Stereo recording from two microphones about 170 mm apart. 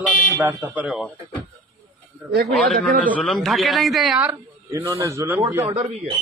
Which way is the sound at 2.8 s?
50° right (ahead or behind).